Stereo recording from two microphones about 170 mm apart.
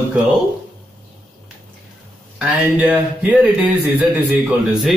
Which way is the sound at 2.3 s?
10° right (ahead or behind).